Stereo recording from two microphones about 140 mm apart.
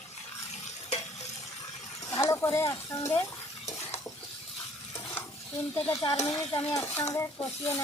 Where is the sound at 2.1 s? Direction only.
20° left (ahead or behind).